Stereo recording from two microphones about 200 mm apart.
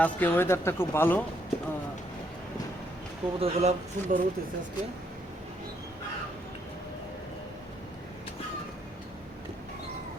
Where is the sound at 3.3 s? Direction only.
30° right (ahead or behind).